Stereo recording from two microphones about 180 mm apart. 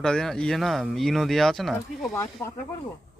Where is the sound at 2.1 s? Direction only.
15° left (ahead or behind).